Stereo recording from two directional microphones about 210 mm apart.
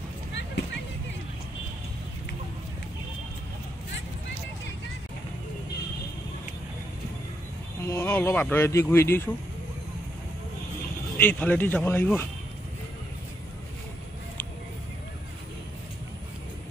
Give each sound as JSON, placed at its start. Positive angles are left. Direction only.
{"t": 0.3, "sound": "a sound", "side_deg": 55}
{"t": 7.9, "sound": "speech", "side_deg": 10}
{"t": 11.1, "sound": "speech", "side_deg": 10}